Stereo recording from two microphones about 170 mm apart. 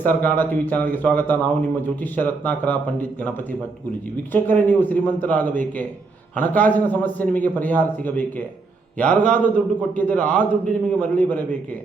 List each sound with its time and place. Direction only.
0.0 s a man's voice: 10° left (ahead or behind)
4.3 s a man's voice: 10° left (ahead or behind)